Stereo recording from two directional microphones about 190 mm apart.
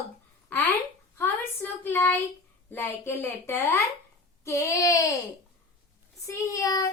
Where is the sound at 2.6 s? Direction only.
10° left (ahead or behind).